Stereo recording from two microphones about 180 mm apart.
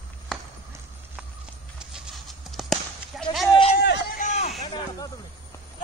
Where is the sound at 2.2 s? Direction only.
Centre (ahead or behind).